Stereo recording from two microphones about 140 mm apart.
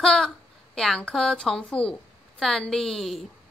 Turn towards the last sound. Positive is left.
turn(degrees=0)  # may be behind; listen again after turning